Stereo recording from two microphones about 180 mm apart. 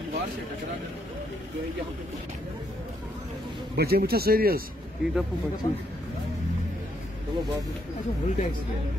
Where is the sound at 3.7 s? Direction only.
60° right (ahead or behind).